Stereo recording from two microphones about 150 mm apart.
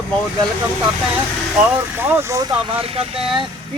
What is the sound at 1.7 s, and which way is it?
Speech, 15° right (ahead or behind).